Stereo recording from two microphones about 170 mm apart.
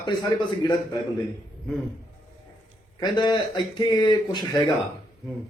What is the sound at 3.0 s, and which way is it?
A man's voice, 25° left (ahead or behind).